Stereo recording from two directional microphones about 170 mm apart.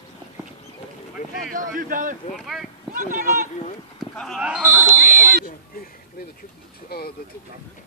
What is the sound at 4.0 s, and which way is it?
Speech, centre (ahead or behind).